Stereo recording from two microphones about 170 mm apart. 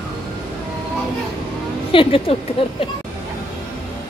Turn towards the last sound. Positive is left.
turn(degrees=35)  # may be behind; listen again after turning